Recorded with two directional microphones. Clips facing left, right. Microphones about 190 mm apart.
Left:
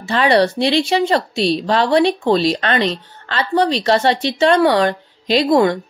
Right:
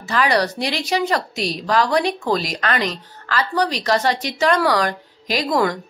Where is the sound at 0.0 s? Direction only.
30° left (ahead or behind).